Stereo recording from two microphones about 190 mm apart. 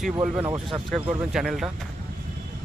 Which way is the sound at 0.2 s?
5° right (ahead or behind).